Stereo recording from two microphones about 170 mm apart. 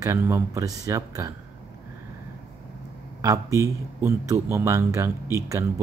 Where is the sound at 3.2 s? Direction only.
20° right (ahead or behind).